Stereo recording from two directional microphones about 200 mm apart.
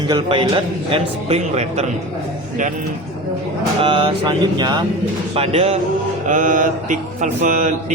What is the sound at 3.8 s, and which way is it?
Speech, 25° right (ahead or behind).